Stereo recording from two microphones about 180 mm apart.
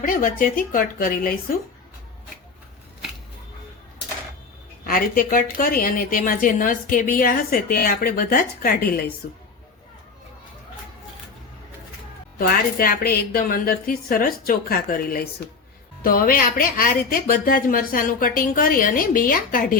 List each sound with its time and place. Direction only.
0.0 s a woman's voice: 50° left (ahead or behind)
4.9 s a woman's voice: 50° left (ahead or behind)
12.4 s a woman's voice: 55° left (ahead or behind)